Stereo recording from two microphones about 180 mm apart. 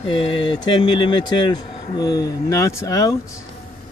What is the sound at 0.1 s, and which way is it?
Speech, 30° left (ahead or behind).